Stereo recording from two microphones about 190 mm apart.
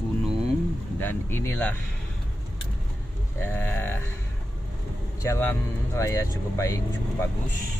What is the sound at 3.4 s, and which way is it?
Speech, 10° left (ahead or behind).